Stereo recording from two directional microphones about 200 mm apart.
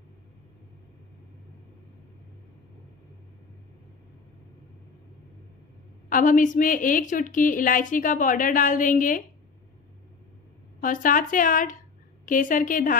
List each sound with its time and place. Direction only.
6.0 s a woman's voice: 40° left (ahead or behind)
10.8 s a woman's voice: 40° left (ahead or behind)